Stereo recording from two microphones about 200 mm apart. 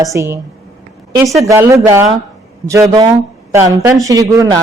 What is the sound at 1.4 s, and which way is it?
Speech, 15° right (ahead or behind).